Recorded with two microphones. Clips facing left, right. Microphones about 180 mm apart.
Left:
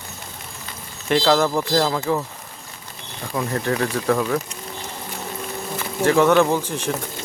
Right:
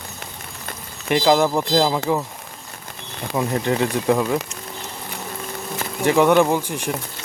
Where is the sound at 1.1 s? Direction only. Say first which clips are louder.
Right 1 dB; 15° right (ahead or behind).